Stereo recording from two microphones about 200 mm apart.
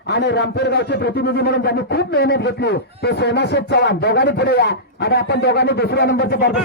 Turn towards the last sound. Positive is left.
turn(degrees=55)  # may be behind; listen again after turning